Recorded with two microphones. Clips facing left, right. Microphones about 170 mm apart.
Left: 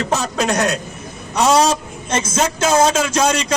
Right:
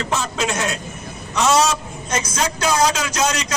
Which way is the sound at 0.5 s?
40° left (ahead or behind).